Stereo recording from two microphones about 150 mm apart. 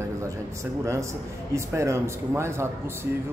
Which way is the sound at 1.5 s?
20° right (ahead or behind).